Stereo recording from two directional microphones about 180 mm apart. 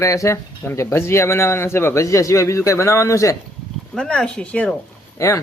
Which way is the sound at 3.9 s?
5° left (ahead or behind).